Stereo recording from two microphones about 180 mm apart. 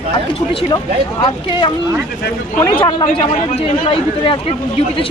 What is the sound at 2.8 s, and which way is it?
Speech, 25° left (ahead or behind).